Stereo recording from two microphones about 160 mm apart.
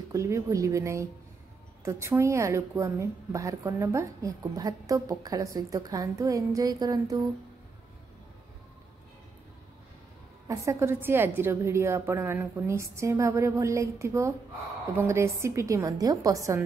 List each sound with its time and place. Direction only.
0.1 s a woman's voice: 20° right (ahead or behind)
10.5 s a woman's voice: 20° right (ahead or behind)